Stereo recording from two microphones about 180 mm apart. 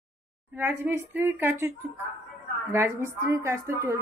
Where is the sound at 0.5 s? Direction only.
10° right (ahead or behind).